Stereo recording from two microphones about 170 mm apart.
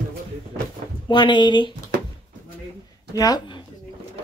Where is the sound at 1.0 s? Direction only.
25° left (ahead or behind).